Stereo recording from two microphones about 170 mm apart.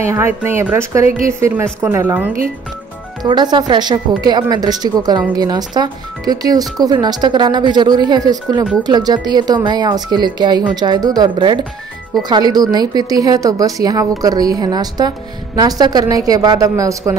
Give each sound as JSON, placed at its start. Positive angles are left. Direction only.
{"t": 0.0, "sound": "a woman's voice", "side_deg": -15}
{"t": 3.2, "sound": "a woman's voice", "side_deg": -25}